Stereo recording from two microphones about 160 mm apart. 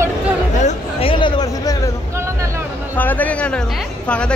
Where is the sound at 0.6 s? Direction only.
35° left (ahead or behind).